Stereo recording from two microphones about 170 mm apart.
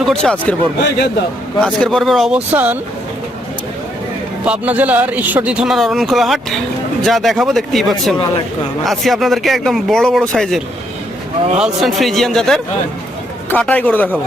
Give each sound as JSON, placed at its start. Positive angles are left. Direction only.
{"t": 0.0, "sound": "a man's voice", "side_deg": 5}
{"t": 0.9, "sound": "a man's voice", "side_deg": 75}
{"t": 1.6, "sound": "speech", "side_deg": 5}
{"t": 2.5, "sound": "speech", "side_deg": -10}
{"t": 4.4, "sound": "speech", "side_deg": -10}